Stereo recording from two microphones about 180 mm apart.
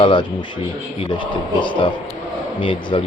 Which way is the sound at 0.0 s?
25° left (ahead or behind).